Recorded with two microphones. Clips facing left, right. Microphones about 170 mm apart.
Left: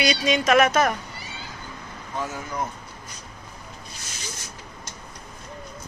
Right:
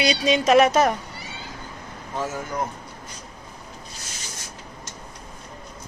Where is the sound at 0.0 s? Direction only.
30° right (ahead or behind).